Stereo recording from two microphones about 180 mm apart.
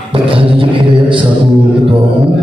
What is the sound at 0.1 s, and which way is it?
Music, 30° right (ahead or behind).